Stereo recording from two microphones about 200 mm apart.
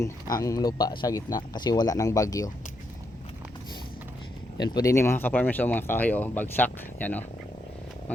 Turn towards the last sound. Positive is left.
turn(degrees=10)  # may be behind; listen again after turning